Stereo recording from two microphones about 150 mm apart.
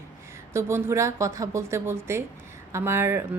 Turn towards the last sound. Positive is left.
turn(degrees=-15)  # may be behind; listen again after turning